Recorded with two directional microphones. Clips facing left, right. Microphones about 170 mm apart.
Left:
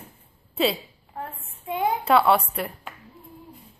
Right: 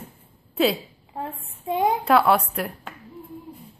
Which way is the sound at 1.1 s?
20° right (ahead or behind).